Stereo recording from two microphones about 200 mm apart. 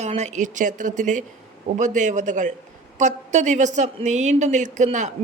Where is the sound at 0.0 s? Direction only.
35° right (ahead or behind).